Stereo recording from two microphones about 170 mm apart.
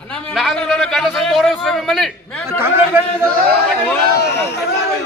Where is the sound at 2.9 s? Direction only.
10° right (ahead or behind).